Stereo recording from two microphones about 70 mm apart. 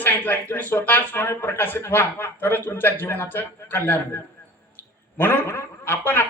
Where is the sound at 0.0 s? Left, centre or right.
Left.